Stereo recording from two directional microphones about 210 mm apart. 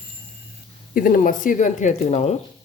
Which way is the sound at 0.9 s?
45° left (ahead or behind).